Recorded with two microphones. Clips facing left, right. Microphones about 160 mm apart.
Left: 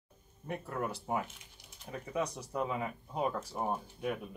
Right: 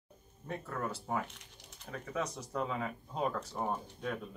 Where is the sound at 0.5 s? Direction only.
15° left (ahead or behind).